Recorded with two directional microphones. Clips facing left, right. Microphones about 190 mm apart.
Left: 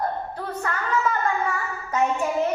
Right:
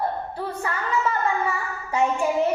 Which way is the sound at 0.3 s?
10° right (ahead or behind).